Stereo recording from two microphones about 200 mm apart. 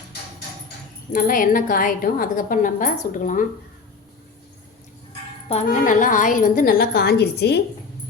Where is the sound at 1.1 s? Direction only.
45° left (ahead or behind).